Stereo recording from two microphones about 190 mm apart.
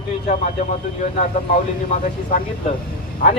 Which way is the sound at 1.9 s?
35° left (ahead or behind).